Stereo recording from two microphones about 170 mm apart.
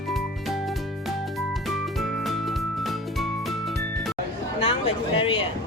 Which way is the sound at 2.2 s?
Centre (ahead or behind).